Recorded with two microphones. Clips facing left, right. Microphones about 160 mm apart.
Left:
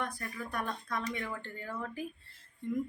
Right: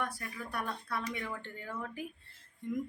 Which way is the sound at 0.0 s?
10° right (ahead or behind).